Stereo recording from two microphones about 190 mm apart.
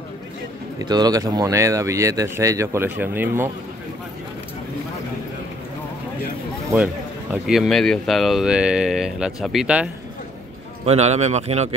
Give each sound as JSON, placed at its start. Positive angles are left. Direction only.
{"t": 0.7, "sound": "speech", "side_deg": -20}
{"t": 7.4, "sound": "speech", "side_deg": 0}
{"t": 10.9, "sound": "a man's voice", "side_deg": -35}